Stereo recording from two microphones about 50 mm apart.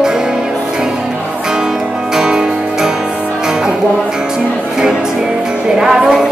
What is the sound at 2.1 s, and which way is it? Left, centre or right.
Music, centre.